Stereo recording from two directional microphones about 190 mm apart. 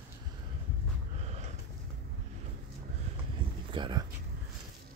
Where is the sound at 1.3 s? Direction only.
35° right (ahead or behind).